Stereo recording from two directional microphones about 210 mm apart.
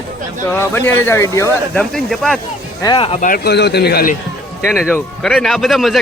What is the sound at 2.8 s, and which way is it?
Speech, 25° left (ahead or behind).